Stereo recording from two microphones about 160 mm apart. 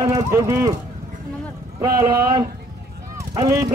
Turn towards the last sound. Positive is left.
turn(degrees=-20)  # may be behind; listen again after turning